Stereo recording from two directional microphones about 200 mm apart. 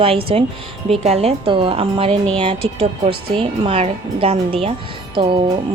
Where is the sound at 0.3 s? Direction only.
30° right (ahead or behind).